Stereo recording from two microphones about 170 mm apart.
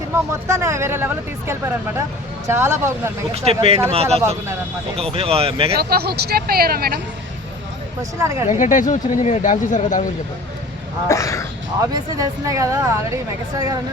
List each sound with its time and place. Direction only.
0.1 s speech: 15° right (ahead or behind)
3.3 s speech: 35° right (ahead or behind)
5.8 s speech: 65° right (ahead or behind)
8.2 s speech: 15° right (ahead or behind)
8.4 s speech: 50° left (ahead or behind)
11.1 s speech: 20° left (ahead or behind)
11.8 s speech: 20° right (ahead or behind)